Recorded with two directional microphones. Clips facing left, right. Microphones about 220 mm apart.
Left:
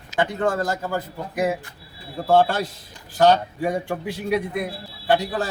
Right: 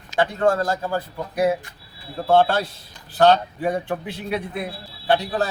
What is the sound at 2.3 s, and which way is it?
A man's voice, 10° left (ahead or behind).